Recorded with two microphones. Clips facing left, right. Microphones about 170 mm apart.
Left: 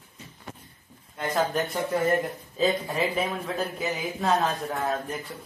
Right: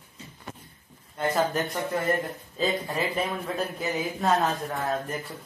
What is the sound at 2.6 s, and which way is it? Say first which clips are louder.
A man's voice: left 2 dB; centre (ahead or behind).